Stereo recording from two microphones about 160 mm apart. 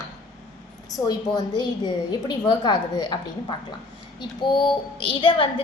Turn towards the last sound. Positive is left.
turn(degrees=30)  # may be behind; listen again after turning